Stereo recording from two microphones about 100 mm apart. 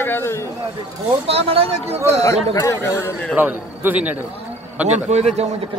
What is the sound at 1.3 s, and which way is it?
Speech, 80° right.